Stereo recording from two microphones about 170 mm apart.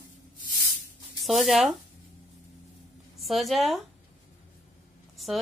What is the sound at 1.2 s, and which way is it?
Speech, centre (ahead or behind).